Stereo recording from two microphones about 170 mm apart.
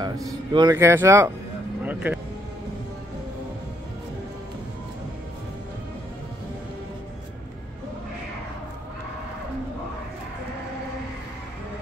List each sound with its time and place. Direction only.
0.0 s speech: 20° right (ahead or behind)
1.8 s vehicle: 10° right (ahead or behind)